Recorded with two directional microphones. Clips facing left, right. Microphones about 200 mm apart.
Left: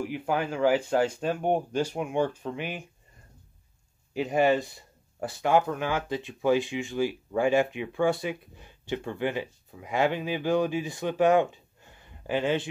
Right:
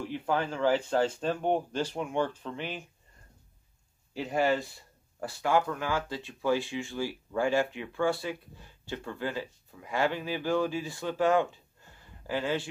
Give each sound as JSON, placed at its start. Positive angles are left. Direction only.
{"t": 0.0, "sound": "speech", "side_deg": 10}
{"t": 4.1, "sound": "speech", "side_deg": 20}